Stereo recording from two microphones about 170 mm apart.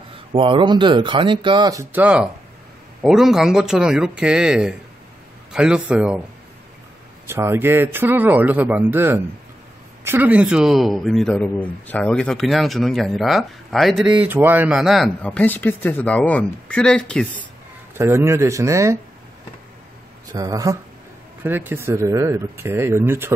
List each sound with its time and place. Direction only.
0.3 s speech: 30° right (ahead or behind); by 6.2 s 5° right (ahead or behind)
7.2 s a man's voice: 15° right (ahead or behind); by 14.1 s centre (ahead or behind)
14.2 s speech: 10° right (ahead or behind); by 17.3 s 5° left (ahead or behind)
17.9 s a man's voice: 15° right (ahead or behind)
20.3 s a man's voice: 20° right (ahead or behind)